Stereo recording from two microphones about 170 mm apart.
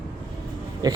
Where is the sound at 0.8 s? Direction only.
25° right (ahead or behind).